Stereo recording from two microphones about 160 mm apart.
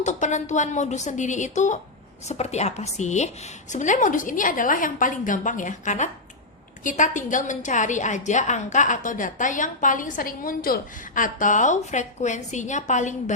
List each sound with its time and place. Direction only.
0.0 s a woman's voice: 50° left (ahead or behind)